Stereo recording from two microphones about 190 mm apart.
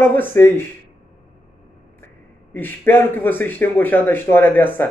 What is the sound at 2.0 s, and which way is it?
Speech, 10° left (ahead or behind).